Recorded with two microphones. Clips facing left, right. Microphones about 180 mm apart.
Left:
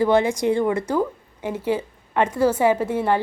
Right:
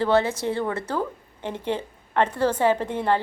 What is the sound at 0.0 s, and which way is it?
A woman's voice, 15° left (ahead or behind).